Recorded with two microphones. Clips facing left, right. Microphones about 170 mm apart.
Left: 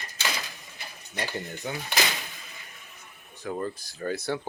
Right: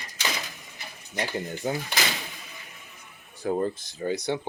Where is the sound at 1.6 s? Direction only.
35° right (ahead or behind).